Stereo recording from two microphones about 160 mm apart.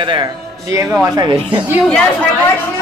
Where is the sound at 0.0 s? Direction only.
30° right (ahead or behind).